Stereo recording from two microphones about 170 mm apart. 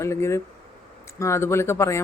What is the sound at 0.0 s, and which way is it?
Speech, 15° left (ahead or behind).